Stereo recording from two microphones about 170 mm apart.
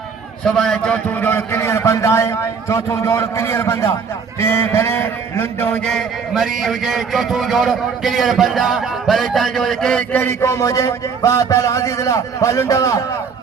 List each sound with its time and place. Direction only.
0.4 s a man's voice: 5° left (ahead or behind); by 13.0 s 20° left (ahead or behind)